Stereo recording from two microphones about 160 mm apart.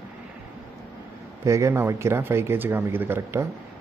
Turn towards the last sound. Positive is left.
turn(degrees=-15)  # may be behind; listen again after turning